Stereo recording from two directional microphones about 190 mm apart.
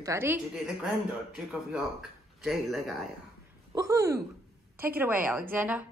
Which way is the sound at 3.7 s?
15° right (ahead or behind).